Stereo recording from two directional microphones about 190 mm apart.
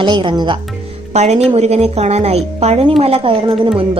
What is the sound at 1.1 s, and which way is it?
Speech, 35° right (ahead or behind).